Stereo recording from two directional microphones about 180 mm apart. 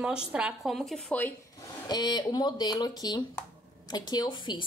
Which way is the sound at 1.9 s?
20° left (ahead or behind).